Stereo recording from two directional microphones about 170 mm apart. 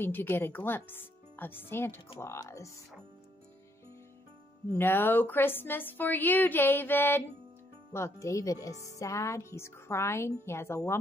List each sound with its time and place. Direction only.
0.0 s a woman's voice: 10° left (ahead or behind)
4.7 s a woman's voice: 10° left (ahead or behind)